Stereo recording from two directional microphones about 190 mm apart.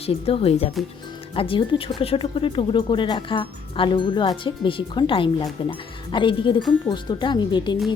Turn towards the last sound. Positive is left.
turn(degrees=25)  # may be behind; listen again after turning